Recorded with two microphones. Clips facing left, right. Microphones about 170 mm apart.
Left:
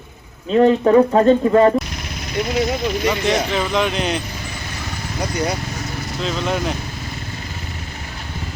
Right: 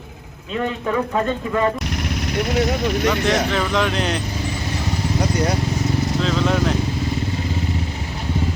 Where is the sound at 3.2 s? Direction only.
5° left (ahead or behind).